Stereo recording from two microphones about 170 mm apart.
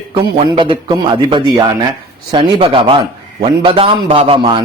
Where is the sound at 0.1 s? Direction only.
30° right (ahead or behind).